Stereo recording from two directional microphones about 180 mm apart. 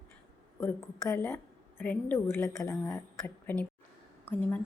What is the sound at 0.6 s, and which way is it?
A woman's voice, 15° left (ahead or behind).